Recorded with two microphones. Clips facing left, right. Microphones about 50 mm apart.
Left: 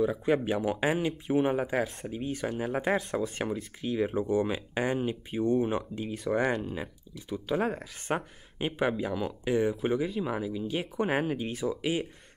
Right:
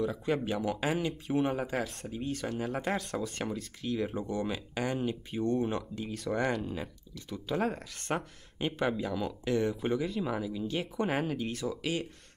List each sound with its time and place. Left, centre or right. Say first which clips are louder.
0.0 s speech: left 4 dB; centre